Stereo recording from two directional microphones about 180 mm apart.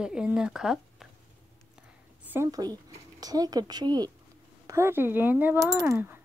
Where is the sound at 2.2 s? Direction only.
15° right (ahead or behind).